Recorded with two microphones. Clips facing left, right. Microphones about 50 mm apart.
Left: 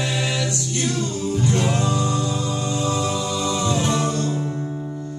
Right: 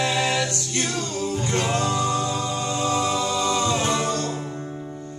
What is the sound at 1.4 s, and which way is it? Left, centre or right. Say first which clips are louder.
Music: left 3 dB; right.